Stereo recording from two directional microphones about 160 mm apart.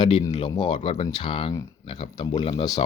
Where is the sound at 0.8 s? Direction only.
40° left (ahead or behind).